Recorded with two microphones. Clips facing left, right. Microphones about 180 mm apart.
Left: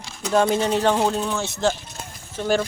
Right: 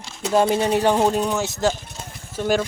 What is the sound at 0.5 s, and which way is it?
Speech, 10° right (ahead or behind).